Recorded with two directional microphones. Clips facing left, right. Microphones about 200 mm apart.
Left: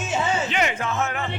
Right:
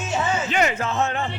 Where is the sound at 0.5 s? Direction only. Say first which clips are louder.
Right 2 dB; 40° right (ahead or behind).